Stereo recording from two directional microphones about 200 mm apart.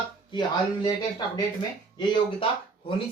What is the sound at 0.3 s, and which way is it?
Speech, 20° left (ahead or behind).